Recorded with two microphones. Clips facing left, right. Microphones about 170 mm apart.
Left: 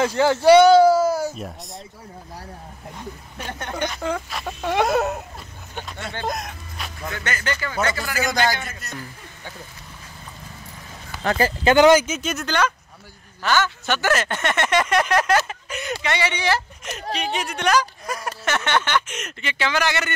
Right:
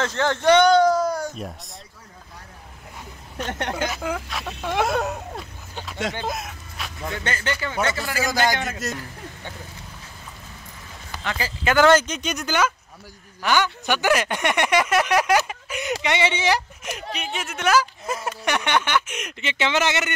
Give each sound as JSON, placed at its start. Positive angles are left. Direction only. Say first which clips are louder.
{"t": 0.0, "sound": "speech", "louder": "left 4 dB", "side_deg": 10}
{"t": 3.7, "sound": "speech", "louder": "left 1 dB", "side_deg": -5}
{"t": 6.2, "sound": "speech", "louder": "left 2 dB", "side_deg": -5}
{"t": 7.2, "sound": "speech", "louder": "even", "side_deg": -30}
{"t": 8.2, "sound": "speech", "louder": "left 1 dB", "side_deg": 0}
{"t": 8.5, "sound": "a man's voice", "louder": "right 7 dB", "side_deg": -90}
{"t": 11.2, "sound": "speech", "louder": "left 8 dB", "side_deg": 50}
{"t": 11.6, "sound": "speech", "louder": "left 3 dB", "side_deg": 20}
{"t": 11.9, "sound": "speech", "louder": "left 2 dB", "side_deg": 5}
{"t": 12.4, "sound": "speech", "louder": "even", "side_deg": -10}
{"t": 18.0, "sound": "speech", "louder": "right 1 dB", "side_deg": -25}
{"t": 19.4, "sound": "speech", "louder": "right 1 dB", "side_deg": -20}